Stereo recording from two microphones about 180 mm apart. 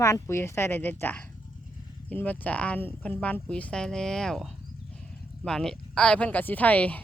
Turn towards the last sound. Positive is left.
turn(degrees=10)  # may be behind; listen again after turning